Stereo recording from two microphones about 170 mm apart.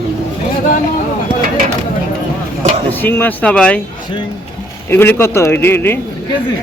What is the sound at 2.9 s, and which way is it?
Speech, 10° left (ahead or behind).